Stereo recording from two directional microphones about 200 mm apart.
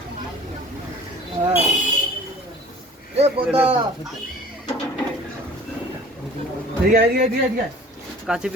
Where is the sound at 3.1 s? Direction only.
30° right (ahead or behind).